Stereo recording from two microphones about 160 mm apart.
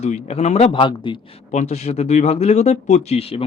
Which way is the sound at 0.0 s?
45° left (ahead or behind).